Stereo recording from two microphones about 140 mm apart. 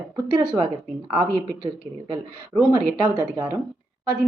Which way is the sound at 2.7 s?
30° right (ahead or behind).